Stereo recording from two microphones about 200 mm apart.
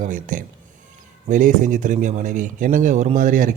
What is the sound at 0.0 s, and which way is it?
A man's voice, 40° right (ahead or behind).